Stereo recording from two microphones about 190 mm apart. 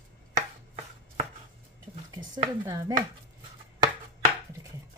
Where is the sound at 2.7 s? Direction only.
15° right (ahead or behind).